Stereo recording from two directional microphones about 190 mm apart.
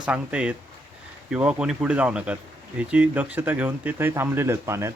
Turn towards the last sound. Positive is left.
turn(degrees=-15)  # may be behind; listen again after turning